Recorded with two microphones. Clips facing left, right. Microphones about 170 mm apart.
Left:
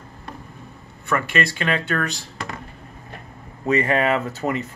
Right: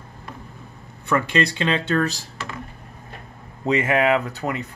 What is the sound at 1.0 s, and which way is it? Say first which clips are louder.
Speech: right 2 dB; 20° right (ahead or behind).